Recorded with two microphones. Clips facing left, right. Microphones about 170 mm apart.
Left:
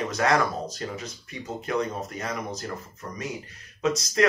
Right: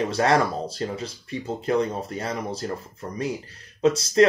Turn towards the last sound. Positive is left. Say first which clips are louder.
# right 5 dB
turn(degrees=-30)  # may be behind; listen again after turning